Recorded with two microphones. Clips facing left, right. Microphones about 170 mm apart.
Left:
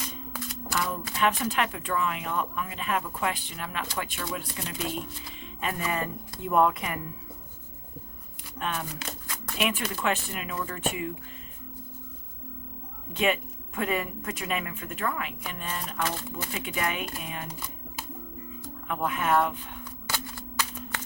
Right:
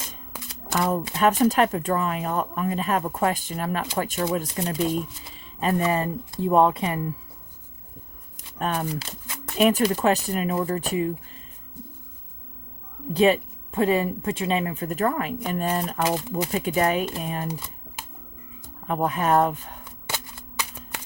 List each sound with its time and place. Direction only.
0.8 s speech: 45° right (ahead or behind)
8.5 s speech: 40° right (ahead or behind)
13.1 s speech: 35° right (ahead or behind)
18.9 s speech: 35° right (ahead or behind)
20.1 s shuffling cards: 20° right (ahead or behind)